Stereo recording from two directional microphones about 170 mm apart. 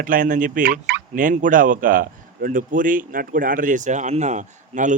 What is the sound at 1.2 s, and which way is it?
Speech, 50° right (ahead or behind).